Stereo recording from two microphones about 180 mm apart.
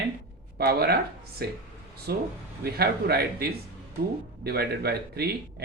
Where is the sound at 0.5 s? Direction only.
60° right (ahead or behind).